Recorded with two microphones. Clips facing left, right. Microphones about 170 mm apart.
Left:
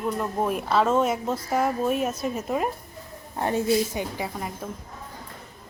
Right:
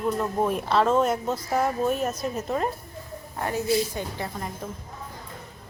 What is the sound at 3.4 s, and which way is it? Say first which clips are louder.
A woman's voice: left 2 dB; 25° left (ahead or behind).